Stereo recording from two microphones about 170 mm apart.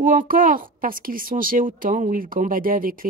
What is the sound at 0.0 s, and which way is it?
A woman's voice, 55° right (ahead or behind).